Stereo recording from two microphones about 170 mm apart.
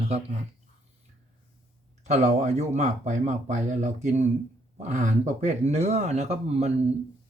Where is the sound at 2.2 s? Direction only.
45° right (ahead or behind).